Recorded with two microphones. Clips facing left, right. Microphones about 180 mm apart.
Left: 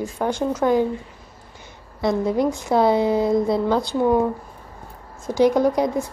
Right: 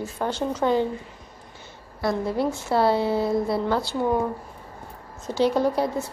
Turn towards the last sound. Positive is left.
turn(degrees=15)  # may be behind; listen again after turning